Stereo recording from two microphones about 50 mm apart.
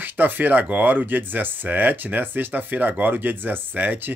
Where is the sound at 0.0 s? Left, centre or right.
Right.